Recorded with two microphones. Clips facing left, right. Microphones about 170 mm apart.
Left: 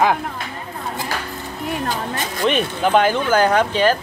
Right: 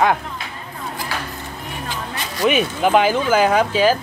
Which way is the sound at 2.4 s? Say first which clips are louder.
Right 2 dB; 5° right (ahead or behind).